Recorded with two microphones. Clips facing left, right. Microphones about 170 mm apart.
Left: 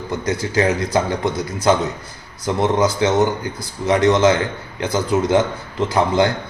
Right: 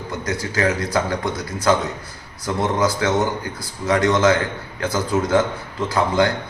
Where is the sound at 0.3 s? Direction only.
25° left (ahead or behind).